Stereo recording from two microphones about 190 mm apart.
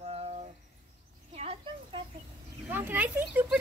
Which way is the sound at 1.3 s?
30° right (ahead or behind).